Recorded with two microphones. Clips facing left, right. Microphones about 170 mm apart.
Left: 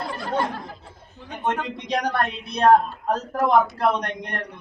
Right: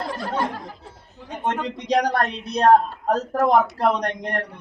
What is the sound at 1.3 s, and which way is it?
Speech, 40° right (ahead or behind).